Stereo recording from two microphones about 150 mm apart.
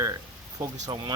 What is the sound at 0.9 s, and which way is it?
Speech, 35° right (ahead or behind).